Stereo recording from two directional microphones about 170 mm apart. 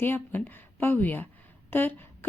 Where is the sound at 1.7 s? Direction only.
10° left (ahead or behind).